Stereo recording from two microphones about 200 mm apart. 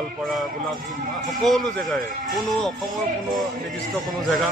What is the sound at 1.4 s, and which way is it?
Speech, centre (ahead or behind).